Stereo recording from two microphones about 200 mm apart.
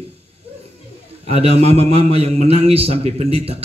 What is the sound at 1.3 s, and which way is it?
A man's voice, 30° right (ahead or behind).